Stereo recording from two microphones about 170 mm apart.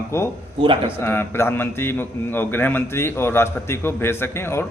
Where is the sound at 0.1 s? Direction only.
15° left (ahead or behind).